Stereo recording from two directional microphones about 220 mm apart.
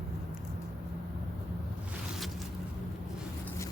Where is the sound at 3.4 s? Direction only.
15° left (ahead or behind).